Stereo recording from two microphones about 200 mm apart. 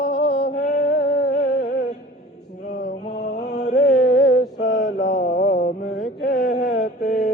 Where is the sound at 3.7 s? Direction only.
40° left (ahead or behind).